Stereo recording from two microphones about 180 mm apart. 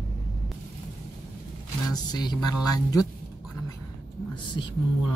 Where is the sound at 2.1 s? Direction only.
20° left (ahead or behind).